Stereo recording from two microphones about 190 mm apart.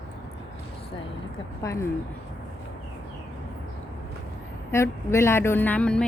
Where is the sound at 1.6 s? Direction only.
15° left (ahead or behind).